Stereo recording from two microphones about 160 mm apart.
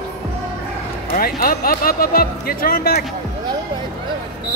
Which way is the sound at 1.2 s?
65° left (ahead or behind).